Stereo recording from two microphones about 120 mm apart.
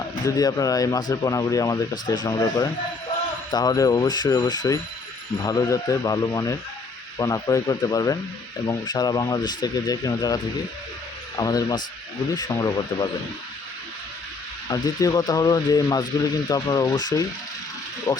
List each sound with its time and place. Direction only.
0.3 s a man's voice: 30° left (ahead or behind)
14.7 s speech: 35° left (ahead or behind)